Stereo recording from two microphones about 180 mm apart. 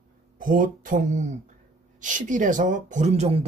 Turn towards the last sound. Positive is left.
turn(degrees=-35)  # may be behind; listen again after turning